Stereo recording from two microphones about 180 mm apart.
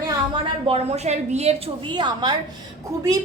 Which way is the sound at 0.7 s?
35° right (ahead or behind).